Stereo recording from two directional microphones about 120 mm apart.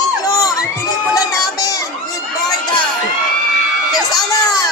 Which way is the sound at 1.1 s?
30° left (ahead or behind).